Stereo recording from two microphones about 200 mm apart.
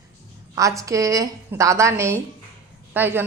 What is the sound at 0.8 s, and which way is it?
A woman's voice, 15° right (ahead or behind).